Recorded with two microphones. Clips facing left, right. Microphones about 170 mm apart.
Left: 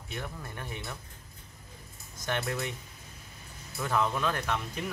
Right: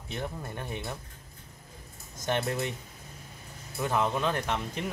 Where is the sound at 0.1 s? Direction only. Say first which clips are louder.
Right 4 dB; 25° right (ahead or behind).